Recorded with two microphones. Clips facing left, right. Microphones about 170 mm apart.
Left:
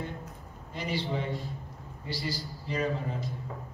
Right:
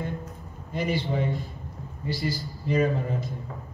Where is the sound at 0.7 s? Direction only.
50° right (ahead or behind).